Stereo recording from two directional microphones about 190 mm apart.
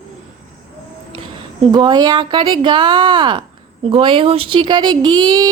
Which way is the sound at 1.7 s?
20° right (ahead or behind).